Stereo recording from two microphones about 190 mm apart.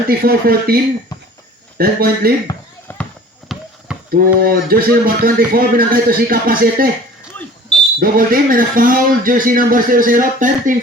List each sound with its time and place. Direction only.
0.1 s a man's voice: 50° right (ahead or behind)
1.8 s a man's voice: 50° right (ahead or behind)
2.5 s basketball bounce: 10° left (ahead or behind)
3.5 s basketball bounce: centre (ahead or behind)
3.9 s a sound: 5° right (ahead or behind)
4.4 s a man's voice: 55° right (ahead or behind)
7.9 s a man's voice: 50° right (ahead or behind)